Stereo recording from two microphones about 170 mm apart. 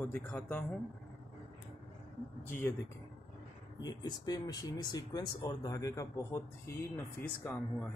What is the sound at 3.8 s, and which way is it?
Speech, 25° left (ahead or behind).